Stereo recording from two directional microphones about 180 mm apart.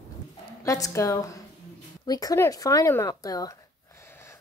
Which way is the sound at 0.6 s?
20° left (ahead or behind).